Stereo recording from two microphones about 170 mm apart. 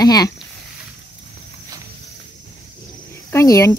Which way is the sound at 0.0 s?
25° left (ahead or behind).